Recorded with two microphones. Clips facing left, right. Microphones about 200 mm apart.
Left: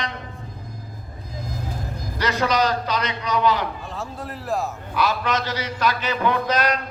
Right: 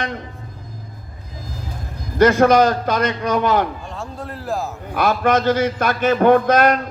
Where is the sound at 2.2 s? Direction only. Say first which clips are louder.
Right 9 dB; 50° right (ahead or behind).